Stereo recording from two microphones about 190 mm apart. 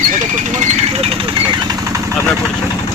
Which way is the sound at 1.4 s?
15° right (ahead or behind).